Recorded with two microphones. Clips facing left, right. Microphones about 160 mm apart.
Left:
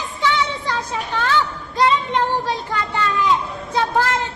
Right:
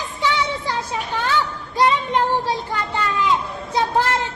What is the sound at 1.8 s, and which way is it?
Child singing, 15° right (ahead or behind).